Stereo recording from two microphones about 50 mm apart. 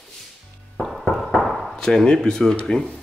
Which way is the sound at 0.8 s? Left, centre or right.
Centre.